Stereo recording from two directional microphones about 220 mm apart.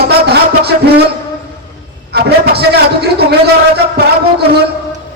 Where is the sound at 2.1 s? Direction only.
45° right (ahead or behind).